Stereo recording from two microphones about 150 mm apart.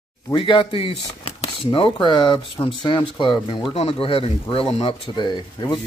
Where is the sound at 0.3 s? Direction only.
35° left (ahead or behind).